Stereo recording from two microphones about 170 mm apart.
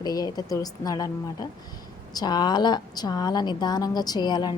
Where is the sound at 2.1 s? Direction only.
25° left (ahead or behind).